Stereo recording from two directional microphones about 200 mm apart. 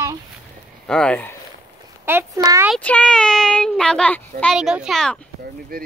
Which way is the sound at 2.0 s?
10° right (ahead or behind).